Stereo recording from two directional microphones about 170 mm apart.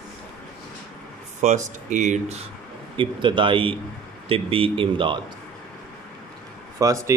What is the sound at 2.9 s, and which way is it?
Speech, 30° right (ahead or behind).